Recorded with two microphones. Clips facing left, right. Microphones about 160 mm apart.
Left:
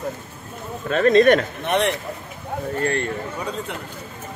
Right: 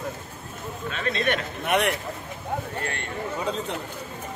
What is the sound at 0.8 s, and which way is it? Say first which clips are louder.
Speech: left 13 dB; 45° left (ahead or behind).